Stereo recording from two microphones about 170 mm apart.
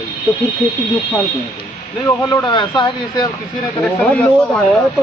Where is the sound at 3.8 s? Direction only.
10° left (ahead or behind).